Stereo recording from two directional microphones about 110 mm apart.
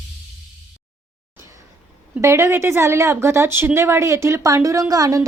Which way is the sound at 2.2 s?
25° right (ahead or behind).